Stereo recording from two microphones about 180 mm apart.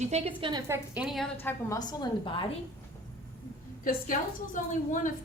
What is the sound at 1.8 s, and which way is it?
Speech, 25° left (ahead or behind).